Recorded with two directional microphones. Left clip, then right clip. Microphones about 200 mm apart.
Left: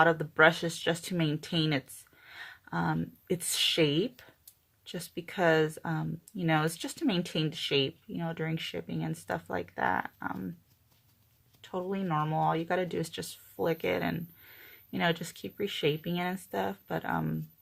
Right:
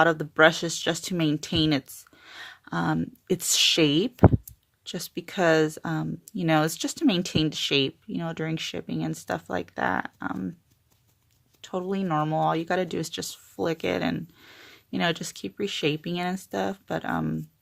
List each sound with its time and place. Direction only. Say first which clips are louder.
0.0 s speech: right 4 dB; 40° right (ahead or behind)
2.2 s a sound: right 4 dB; 40° right (ahead or behind)
3.4 s speech: right 6 dB; 45° right (ahead or behind)
11.6 s speech: right 5 dB; 45° right (ahead or behind)